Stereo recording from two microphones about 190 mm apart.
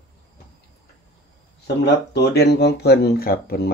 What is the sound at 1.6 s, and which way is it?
Speech, 60° left (ahead or behind).